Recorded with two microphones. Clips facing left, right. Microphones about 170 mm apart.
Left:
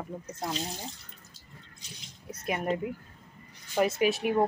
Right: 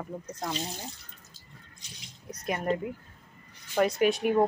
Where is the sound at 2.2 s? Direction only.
5° left (ahead or behind).